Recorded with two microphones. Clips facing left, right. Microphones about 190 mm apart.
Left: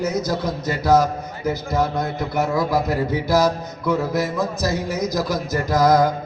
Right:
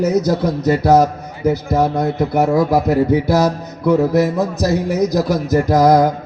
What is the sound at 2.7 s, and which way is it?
Music, 60° right (ahead or behind).